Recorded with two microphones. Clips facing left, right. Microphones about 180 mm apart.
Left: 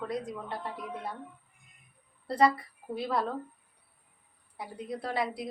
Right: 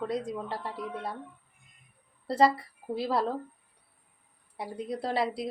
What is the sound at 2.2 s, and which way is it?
A woman's voice, 30° right (ahead or behind).